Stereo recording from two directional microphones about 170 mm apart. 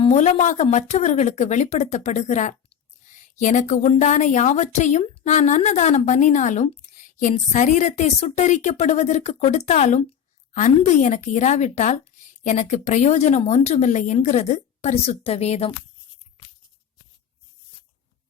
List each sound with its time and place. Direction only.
0.0 s speech: 40° left (ahead or behind)